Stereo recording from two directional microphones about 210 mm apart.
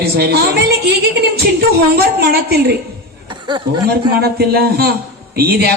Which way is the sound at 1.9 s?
50° right (ahead or behind).